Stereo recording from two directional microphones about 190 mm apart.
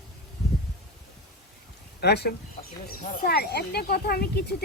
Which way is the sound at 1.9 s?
60° left (ahead or behind).